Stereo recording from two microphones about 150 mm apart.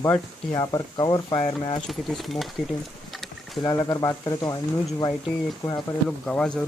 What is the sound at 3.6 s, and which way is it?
Speech, 25° left (ahead or behind).